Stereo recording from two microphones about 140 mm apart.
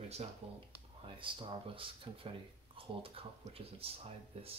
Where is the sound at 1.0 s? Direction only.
35° right (ahead or behind).